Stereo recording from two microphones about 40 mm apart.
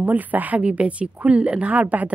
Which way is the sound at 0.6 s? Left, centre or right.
Right.